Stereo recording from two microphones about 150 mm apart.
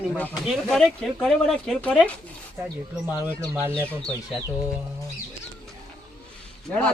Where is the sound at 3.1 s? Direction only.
15° right (ahead or behind).